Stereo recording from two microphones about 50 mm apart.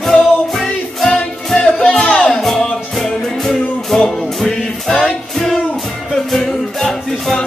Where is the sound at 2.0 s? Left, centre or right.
Left.